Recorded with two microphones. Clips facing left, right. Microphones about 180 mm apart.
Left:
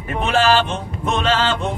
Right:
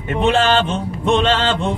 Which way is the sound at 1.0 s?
25° right (ahead or behind).